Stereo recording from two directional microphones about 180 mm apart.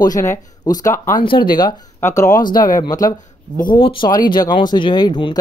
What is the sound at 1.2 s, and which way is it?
Speech, 25° left (ahead or behind).